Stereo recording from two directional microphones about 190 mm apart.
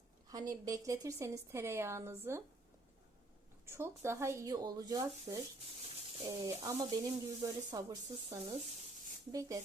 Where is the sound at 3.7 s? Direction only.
15° right (ahead or behind).